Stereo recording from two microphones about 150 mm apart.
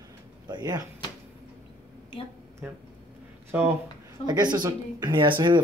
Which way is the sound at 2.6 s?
10° right (ahead or behind).